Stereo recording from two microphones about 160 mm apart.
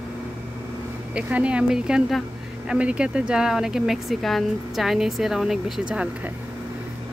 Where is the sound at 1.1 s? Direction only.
10° right (ahead or behind).